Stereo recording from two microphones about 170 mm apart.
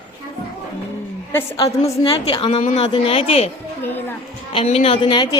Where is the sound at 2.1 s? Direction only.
35° left (ahead or behind).